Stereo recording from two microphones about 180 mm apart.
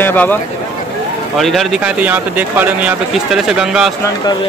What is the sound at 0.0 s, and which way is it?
Speech, 10° left (ahead or behind).